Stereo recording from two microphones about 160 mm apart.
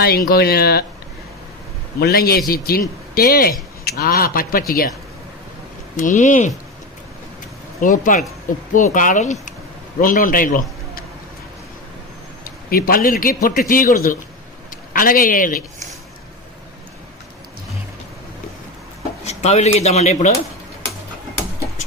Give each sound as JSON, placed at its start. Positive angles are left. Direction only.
{"t": 0.0, "sound": "speech", "side_deg": 70}
{"t": 2.0, "sound": "speech", "side_deg": 80}
{"t": 6.0, "sound": "speech", "side_deg": 50}
{"t": 7.8, "sound": "a man's voice", "side_deg": 55}
{"t": 12.5, "sound": "a man's voice", "side_deg": 65}
{"t": 19.2, "sound": "speech", "side_deg": 40}